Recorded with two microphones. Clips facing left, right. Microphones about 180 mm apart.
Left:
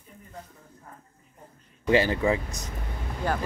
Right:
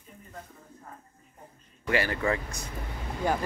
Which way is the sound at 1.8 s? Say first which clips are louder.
Left 5 dB; 20° left (ahead or behind).